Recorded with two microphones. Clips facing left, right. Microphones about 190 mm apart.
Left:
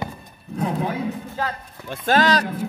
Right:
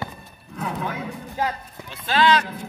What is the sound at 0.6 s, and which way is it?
Speech, 35° left (ahead or behind).